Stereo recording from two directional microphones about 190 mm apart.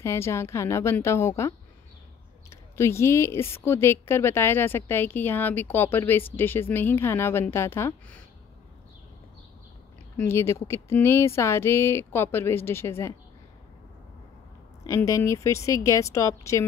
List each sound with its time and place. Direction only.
0.0 s speech: 15° left (ahead or behind)
2.5 s speech: 15° left (ahead or behind)
10.1 s speech: 15° left (ahead or behind)
14.9 s speech: 15° left (ahead or behind)